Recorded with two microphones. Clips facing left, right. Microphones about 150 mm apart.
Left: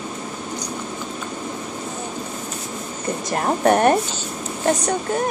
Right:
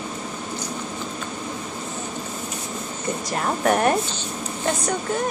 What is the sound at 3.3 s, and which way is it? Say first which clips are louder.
Speech: left 4 dB; 35° left (ahead or behind).